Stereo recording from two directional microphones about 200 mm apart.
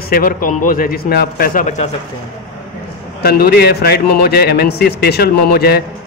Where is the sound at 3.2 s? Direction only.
50° left (ahead or behind).